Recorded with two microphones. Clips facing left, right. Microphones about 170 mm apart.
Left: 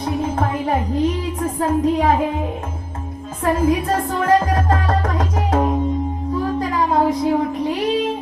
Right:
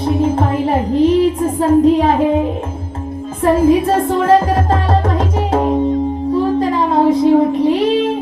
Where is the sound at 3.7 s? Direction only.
30° right (ahead or behind).